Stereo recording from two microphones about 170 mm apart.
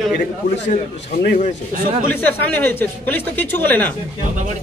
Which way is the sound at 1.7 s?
45° right (ahead or behind).